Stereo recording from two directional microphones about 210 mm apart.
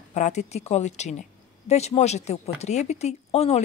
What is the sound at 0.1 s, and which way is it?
A woman's voice, 35° left (ahead or behind).